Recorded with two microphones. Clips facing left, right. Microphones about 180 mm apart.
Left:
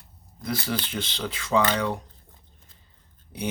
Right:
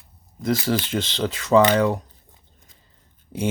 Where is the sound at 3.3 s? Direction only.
45° right (ahead or behind).